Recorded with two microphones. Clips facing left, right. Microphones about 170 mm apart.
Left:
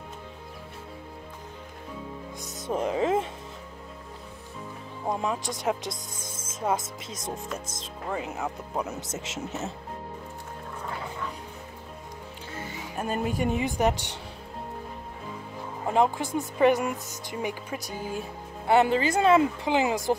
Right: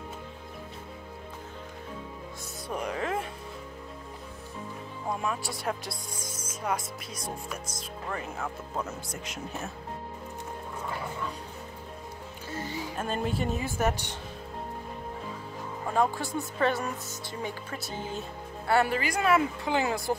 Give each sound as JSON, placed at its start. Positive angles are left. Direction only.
{"t": 2.4, "sound": "music", "side_deg": 25}
{"t": 5.1, "sound": "a woman's voice", "side_deg": 20}
{"t": 12.9, "sound": "a woman's voice", "side_deg": 10}
{"t": 15.9, "sound": "a woman's voice", "side_deg": 20}